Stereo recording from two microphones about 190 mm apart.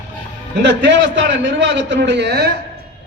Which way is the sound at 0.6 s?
65° right (ahead or behind).